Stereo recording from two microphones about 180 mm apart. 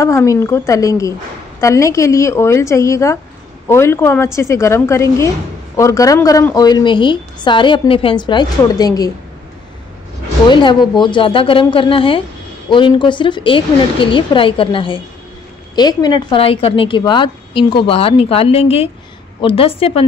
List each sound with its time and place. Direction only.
0.0 s a woman's voice: 15° left (ahead or behind)
10.5 s a woman's voice: 25° left (ahead or behind)